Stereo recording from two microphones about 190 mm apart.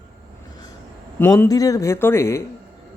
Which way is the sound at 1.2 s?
15° left (ahead or behind).